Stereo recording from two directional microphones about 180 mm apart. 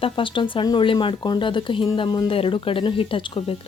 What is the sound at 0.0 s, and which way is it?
Speech, 30° left (ahead or behind).